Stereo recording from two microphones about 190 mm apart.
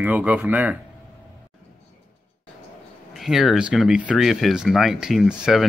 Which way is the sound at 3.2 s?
Centre (ahead or behind).